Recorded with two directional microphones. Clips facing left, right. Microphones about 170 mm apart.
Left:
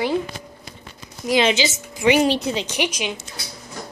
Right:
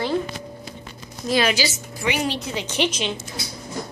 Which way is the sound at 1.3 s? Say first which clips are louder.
Left 2 dB; 20° left (ahead or behind).